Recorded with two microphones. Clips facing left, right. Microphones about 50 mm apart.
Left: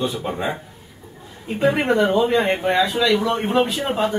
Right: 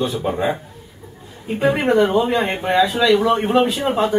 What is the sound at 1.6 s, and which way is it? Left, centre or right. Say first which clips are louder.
Speech: right 2 dB; centre.